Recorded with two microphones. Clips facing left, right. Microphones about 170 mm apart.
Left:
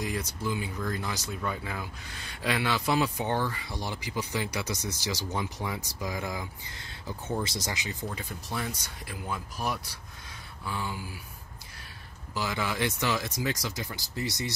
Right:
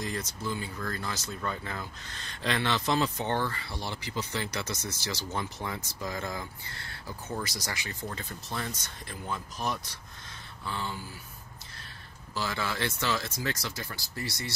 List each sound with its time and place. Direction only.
0.0 s speech: 10° left (ahead or behind)
10.6 s a sound: 10° left (ahead or behind)
12.4 s speech: 15° left (ahead or behind)